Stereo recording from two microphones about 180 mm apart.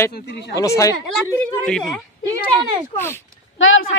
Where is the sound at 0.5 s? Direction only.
20° left (ahead or behind).